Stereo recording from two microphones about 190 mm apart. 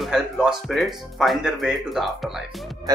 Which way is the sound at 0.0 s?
Centre (ahead or behind).